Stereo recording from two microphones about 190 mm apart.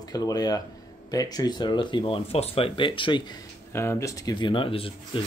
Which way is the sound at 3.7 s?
15° left (ahead or behind).